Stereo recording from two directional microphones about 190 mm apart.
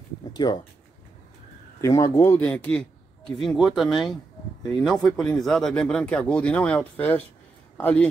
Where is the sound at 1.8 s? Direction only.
15° left (ahead or behind).